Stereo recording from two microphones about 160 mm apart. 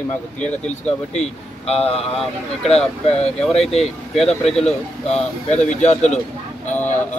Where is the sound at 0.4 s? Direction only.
5° left (ahead or behind).